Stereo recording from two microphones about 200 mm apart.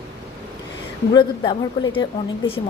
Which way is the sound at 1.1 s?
25° left (ahead or behind).